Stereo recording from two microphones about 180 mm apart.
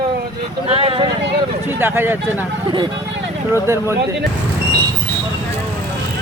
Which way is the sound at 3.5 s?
15° right (ahead or behind).